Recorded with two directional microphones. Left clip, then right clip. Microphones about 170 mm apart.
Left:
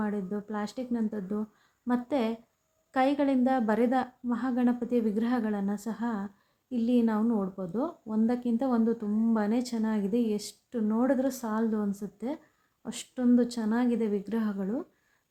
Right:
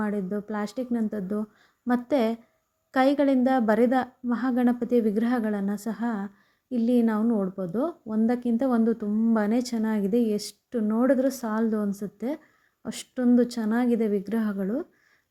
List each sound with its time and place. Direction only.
0.0 s a woman's voice: 25° right (ahead or behind)